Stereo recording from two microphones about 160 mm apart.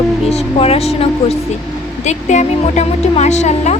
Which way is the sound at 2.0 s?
45° left (ahead or behind).